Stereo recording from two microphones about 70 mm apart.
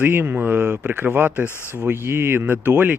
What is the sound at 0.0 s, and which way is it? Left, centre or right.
Speech, right.